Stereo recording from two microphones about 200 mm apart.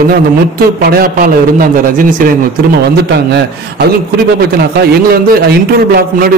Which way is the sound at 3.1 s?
55° right (ahead or behind).